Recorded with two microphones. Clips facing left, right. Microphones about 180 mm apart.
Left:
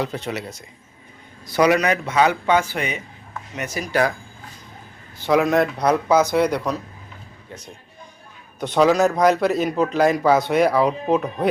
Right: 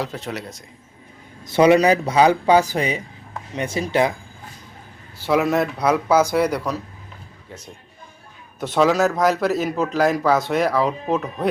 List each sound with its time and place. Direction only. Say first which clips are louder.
0.0 s speech: left 2 dB; centre (ahead or behind)
1.5 s speech: right 4 dB; 25° right (ahead or behind)
5.2 s speech: left 1 dB; 5° right (ahead or behind)
8.6 s speech: left 1 dB; centre (ahead or behind)